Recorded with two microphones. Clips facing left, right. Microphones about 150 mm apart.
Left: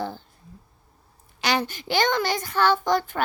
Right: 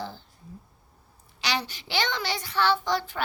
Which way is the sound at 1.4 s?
50° left (ahead or behind).